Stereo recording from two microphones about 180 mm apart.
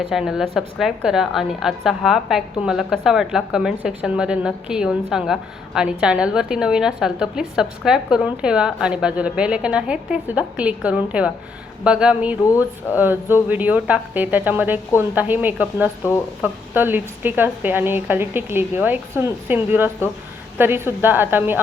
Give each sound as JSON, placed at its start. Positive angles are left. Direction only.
{"t": 0.1, "sound": "a woman's voice", "side_deg": 0}